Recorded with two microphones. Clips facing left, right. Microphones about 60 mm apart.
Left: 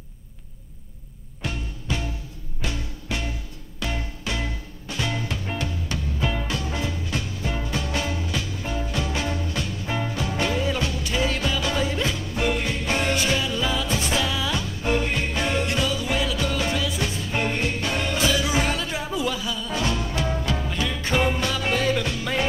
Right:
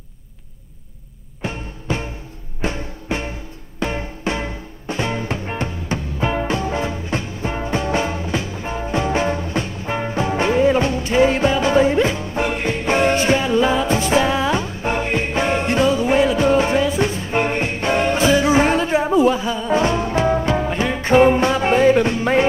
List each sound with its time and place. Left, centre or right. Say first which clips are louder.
1.4 s music: right 4 dB; right